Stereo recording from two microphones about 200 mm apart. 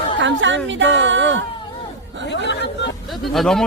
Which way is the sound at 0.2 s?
65° right (ahead or behind).